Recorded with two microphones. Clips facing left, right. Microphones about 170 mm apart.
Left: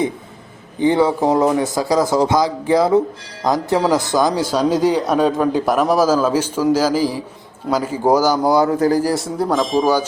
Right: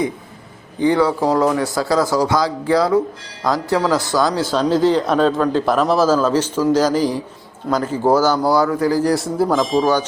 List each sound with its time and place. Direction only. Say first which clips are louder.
0.8 s a man's voice: left 1 dB; 20° left (ahead or behind)
9.0 s speech: right 2 dB; centre (ahead or behind)
9.8 s a man's voice: left 1 dB; 10° left (ahead or behind)